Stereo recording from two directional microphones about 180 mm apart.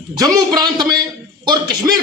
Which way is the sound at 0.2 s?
20° right (ahead or behind).